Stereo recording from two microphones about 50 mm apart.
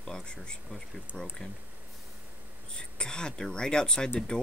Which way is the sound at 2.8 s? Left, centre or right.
Centre.